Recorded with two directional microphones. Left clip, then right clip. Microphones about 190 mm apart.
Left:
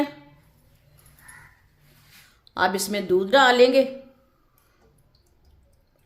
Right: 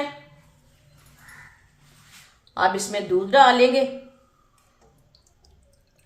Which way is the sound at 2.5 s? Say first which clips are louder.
Right 1 dB; 55° left (ahead or behind).